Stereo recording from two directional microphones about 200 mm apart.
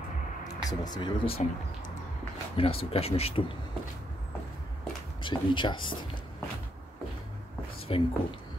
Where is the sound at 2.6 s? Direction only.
30° left (ahead or behind).